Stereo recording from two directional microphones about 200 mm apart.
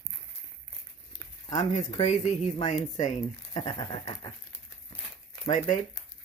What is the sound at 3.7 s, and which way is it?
Speech, 20° left (ahead or behind).